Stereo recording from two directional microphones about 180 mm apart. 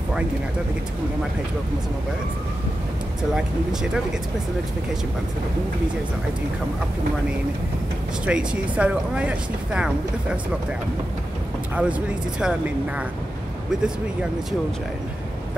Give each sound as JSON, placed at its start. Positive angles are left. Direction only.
{"t": 8.3, "sound": "speech", "side_deg": -5}
{"t": 11.7, "sound": "speech", "side_deg": -5}